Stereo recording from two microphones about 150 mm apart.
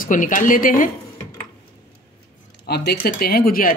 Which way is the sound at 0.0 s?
60° left (ahead or behind).